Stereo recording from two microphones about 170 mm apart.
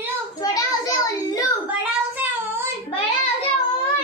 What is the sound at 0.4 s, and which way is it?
Child singing, 20° left (ahead or behind).